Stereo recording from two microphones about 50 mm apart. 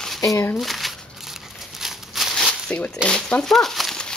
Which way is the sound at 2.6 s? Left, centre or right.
Left.